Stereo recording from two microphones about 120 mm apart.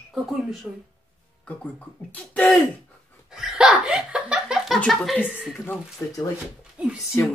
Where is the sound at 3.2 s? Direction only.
5° right (ahead or behind).